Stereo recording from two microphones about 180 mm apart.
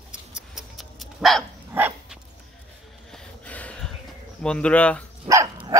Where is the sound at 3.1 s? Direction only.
10° left (ahead or behind).